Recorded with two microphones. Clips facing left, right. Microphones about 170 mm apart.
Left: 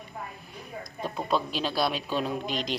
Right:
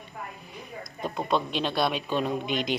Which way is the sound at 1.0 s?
5° left (ahead or behind).